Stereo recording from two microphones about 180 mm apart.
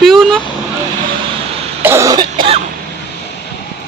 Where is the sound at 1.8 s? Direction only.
15° right (ahead or behind).